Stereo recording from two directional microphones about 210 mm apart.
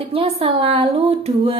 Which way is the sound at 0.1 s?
25° right (ahead or behind).